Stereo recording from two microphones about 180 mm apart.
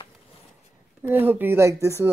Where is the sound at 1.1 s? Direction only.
10° right (ahead or behind).